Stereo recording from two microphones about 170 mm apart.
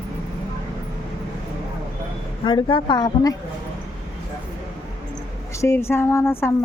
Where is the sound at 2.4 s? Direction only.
30° left (ahead or behind).